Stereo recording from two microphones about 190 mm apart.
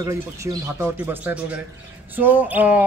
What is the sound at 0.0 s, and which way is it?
Speech, 15° right (ahead or behind).